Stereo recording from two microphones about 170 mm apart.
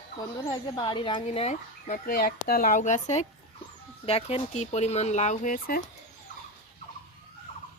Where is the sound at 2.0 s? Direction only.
55° left (ahead or behind).